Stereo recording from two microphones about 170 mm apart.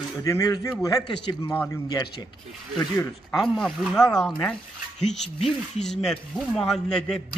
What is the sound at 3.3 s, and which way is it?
Speech, centre (ahead or behind).